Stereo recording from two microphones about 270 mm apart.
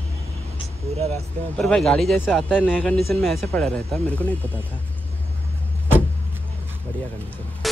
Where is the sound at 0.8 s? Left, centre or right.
Right.